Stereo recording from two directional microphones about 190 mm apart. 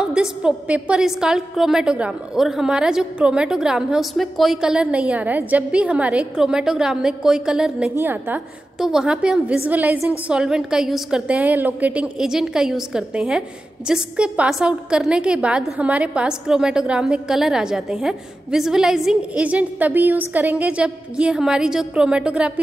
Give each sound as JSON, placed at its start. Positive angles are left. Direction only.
{"t": 0.0, "sound": "a woman's voice", "side_deg": -5}